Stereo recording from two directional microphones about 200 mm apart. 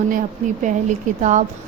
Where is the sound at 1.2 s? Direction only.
35° right (ahead or behind).